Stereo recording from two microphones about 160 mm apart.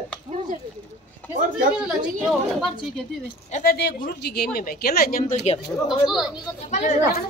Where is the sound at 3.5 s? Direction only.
70° left (ahead or behind).